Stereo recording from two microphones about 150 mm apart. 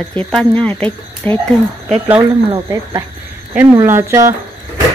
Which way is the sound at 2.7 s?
25° right (ahead or behind).